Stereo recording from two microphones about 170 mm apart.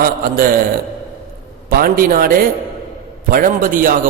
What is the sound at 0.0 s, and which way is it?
Speech, 60° right (ahead or behind).